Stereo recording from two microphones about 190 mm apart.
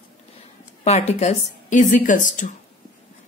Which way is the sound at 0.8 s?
35° left (ahead or behind).